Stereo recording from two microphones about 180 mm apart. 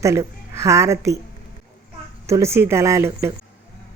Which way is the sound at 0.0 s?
15° right (ahead or behind).